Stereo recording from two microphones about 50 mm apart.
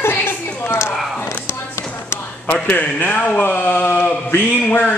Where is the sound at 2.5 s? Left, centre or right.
Left.